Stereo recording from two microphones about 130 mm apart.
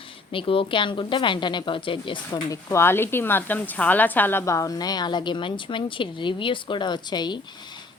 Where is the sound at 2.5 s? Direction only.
25° left (ahead or behind).